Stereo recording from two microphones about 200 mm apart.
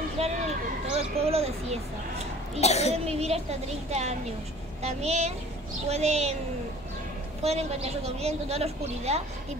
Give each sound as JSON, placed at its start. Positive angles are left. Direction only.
{"t": 0.2, "sound": "a sound", "side_deg": -30}
{"t": 0.9, "sound": "speech", "side_deg": -30}
{"t": 2.6, "sound": "a child's voice", "side_deg": 35}
{"t": 2.9, "sound": "a woman's voice", "side_deg": -30}
{"t": 7.4, "sound": "a woman's voice", "side_deg": -30}